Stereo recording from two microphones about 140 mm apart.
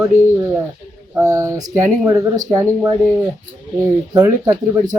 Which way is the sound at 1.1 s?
20° right (ahead or behind).